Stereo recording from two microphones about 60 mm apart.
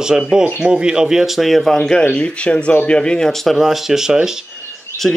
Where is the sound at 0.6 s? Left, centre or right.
Centre.